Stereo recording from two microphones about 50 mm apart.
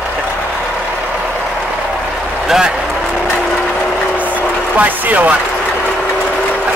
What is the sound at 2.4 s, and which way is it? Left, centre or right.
Speech, centre.